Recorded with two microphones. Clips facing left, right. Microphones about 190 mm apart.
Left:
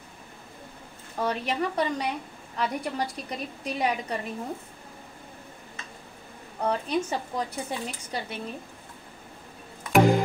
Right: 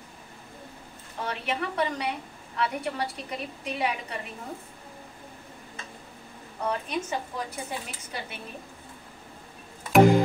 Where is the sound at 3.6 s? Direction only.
40° left (ahead or behind).